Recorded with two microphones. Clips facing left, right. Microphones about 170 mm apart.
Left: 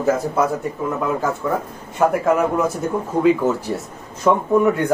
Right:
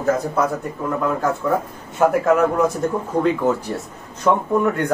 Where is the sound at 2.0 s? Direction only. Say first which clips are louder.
Right 1 dB; centre (ahead or behind).